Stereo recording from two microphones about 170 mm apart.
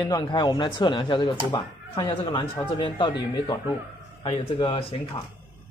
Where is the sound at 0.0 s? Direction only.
25° left (ahead or behind).